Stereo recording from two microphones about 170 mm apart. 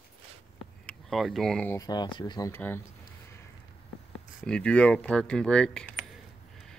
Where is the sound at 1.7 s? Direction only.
25° left (ahead or behind).